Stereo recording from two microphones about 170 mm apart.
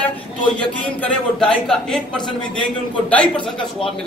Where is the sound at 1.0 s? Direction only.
5° left (ahead or behind).